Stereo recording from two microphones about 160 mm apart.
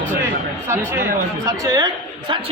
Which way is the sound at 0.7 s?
15° right (ahead or behind).